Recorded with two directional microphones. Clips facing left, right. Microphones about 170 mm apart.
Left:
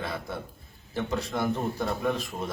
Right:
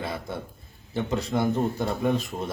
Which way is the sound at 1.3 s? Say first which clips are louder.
Right 5 dB; 25° right (ahead or behind).